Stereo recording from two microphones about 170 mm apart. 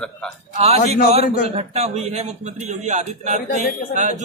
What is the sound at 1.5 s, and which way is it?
A man's voice, 40° right (ahead or behind).